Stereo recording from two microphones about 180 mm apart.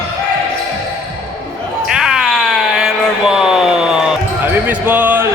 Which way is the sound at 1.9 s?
5° right (ahead or behind).